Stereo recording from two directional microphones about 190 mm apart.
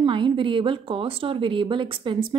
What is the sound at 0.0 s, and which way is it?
A woman's voice, 25° right (ahead or behind).